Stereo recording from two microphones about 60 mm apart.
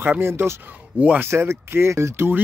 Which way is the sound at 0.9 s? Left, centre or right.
Right.